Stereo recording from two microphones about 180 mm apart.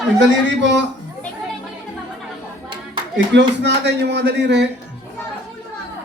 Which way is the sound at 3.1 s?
75° right (ahead or behind).